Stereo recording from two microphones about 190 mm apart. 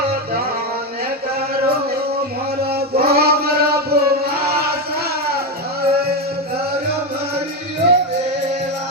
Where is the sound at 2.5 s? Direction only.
55° right (ahead or behind).